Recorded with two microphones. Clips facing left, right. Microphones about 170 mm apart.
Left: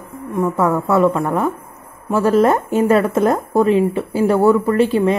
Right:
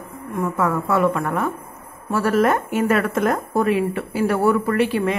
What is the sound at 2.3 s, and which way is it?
A woman's voice, 30° left (ahead or behind).